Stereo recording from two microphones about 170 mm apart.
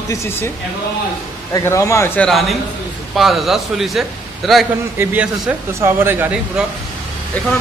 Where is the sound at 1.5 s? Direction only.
15° left (ahead or behind).